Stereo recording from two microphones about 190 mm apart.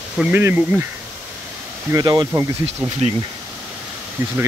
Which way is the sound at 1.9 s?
20° right (ahead or behind).